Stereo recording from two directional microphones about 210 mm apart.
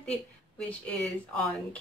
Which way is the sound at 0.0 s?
5° left (ahead or behind).